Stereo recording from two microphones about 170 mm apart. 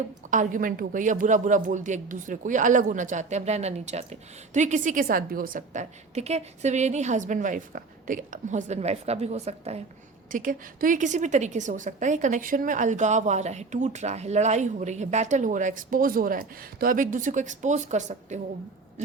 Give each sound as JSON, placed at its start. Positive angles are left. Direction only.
{"t": 0.3, "sound": "a woman's voice", "side_deg": -50}
{"t": 10.3, "sound": "a woman's voice", "side_deg": -55}